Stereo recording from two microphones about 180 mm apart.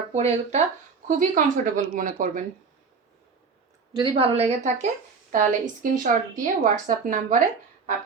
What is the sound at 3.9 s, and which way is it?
A woman's voice, 30° right (ahead or behind).